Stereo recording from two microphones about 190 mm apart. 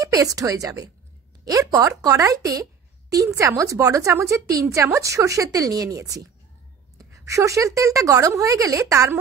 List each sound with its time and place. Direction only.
0.0 s speech: 20° right (ahead or behind)